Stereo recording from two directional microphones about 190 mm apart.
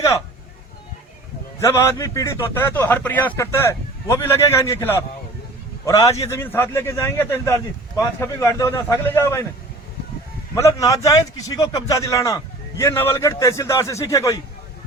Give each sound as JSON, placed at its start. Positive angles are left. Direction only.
{"t": 1.5, "sound": "a man's voice", "side_deg": 15}
{"t": 10.5, "sound": "a man's voice", "side_deg": 15}